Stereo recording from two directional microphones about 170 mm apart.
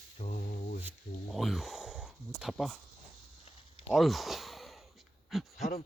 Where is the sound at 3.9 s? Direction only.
Centre (ahead or behind).